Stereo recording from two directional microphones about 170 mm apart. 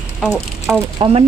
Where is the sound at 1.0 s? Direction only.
35° right (ahead or behind).